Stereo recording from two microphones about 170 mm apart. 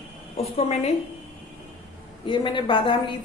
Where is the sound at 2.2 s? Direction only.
30° left (ahead or behind).